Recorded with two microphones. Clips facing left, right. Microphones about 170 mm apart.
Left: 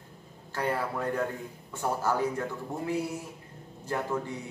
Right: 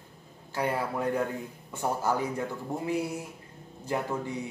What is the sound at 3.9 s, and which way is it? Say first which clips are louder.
Speech: right 1 dB; 15° right (ahead or behind).